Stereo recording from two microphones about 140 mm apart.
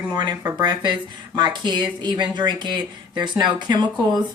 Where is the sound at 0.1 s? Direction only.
30° right (ahead or behind).